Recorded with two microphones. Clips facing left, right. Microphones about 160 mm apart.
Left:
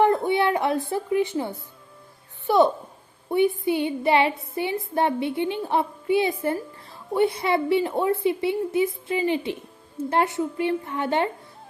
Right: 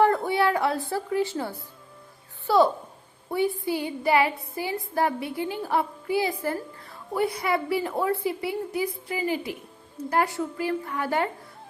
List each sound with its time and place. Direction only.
0.0 s a woman's voice: 20° left (ahead or behind)